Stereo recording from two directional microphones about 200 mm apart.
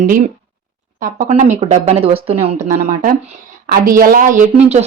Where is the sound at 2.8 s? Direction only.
40° right (ahead or behind).